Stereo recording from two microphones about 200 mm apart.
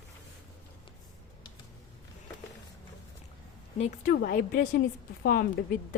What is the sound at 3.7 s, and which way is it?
Speech, 30° left (ahead or behind).